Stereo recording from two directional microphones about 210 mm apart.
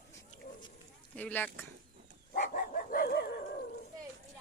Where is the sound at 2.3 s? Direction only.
40° left (ahead or behind).